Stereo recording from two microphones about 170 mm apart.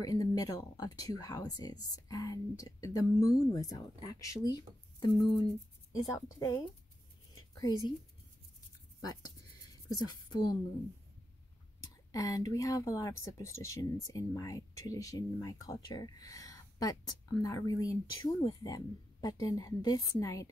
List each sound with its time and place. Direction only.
0.0 s speech: 20° left (ahead or behind)
9.0 s speech: 20° left (ahead or behind)
12.1 s speech: 20° left (ahead or behind)